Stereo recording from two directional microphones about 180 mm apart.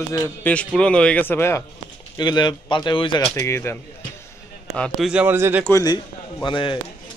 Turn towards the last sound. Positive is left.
turn(degrees=25)  # may be behind; listen again after turning